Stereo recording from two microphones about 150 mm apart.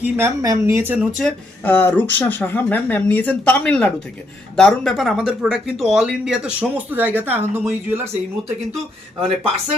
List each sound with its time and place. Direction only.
0.0 s a woman's voice: 20° right (ahead or behind)
1.2 s speech: 10° left (ahead or behind); by 8.0 s 15° right (ahead or behind)